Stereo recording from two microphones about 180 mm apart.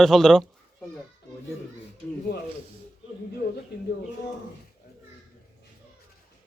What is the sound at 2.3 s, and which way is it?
Speech, 65° left (ahead or behind).